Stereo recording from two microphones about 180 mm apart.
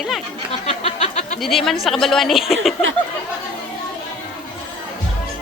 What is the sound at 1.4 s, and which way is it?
A woman's voice, centre (ahead or behind).